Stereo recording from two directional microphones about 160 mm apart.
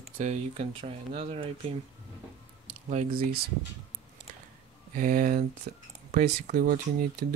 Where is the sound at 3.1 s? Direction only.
70° right (ahead or behind).